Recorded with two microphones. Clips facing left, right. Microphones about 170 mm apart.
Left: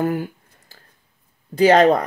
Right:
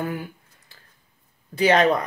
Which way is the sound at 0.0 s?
40° left (ahead or behind).